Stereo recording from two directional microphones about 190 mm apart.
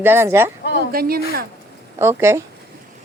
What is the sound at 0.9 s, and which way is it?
Speech, 50° right (ahead or behind).